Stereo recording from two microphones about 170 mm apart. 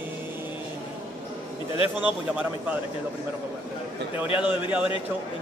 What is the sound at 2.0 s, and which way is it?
Speech, 10° right (ahead or behind).